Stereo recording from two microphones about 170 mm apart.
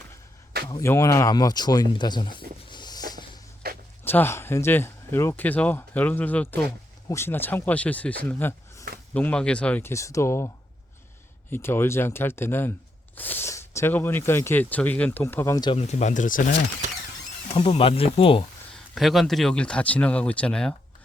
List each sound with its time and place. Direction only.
0.8 s speech: 15° left (ahead or behind)
2.6 s a sound: 25° left (ahead or behind)
3.6 s zipper: 70° right (ahead or behind)
4.0 s speech: 10° left (ahead or behind)
11.5 s speech: 15° left (ahead or behind)
15.7 s speech: 40° left (ahead or behind)
17.5 s speech: 35° left (ahead or behind)
18.9 s speech: centre (ahead or behind)